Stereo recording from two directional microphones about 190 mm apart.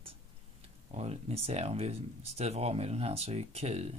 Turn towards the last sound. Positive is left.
turn(degrees=-35)  # may be behind; listen again after turning